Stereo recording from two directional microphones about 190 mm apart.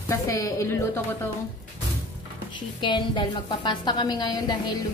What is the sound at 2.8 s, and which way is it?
A woman's voice, 25° left (ahead or behind).